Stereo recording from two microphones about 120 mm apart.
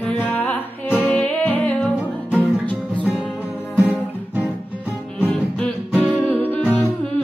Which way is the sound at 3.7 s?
15° right (ahead or behind).